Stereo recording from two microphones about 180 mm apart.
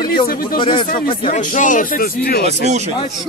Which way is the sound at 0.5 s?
25° left (ahead or behind).